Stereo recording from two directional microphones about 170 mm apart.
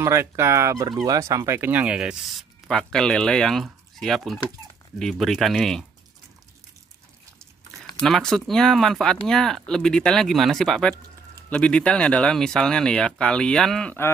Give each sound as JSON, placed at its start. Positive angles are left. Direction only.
{"t": 0.0, "sound": "speech", "side_deg": -15}
{"t": 8.0, "sound": "speech", "side_deg": 5}